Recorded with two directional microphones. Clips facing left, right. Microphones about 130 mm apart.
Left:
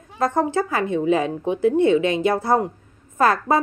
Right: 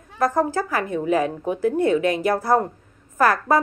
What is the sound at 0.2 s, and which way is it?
A woman's voice, 25° left (ahead or behind).